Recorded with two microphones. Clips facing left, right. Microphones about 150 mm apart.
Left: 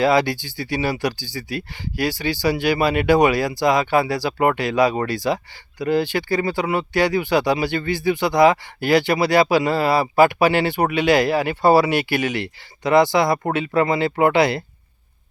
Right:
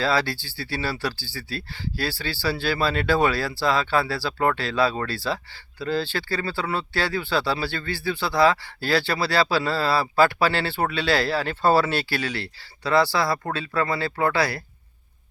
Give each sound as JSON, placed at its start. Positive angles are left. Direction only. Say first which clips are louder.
{"t": 0.0, "sound": "speech", "louder": "left 6 dB", "side_deg": 15}